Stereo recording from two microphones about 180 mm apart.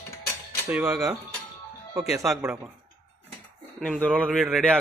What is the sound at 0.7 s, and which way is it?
Speech, 15° right (ahead or behind).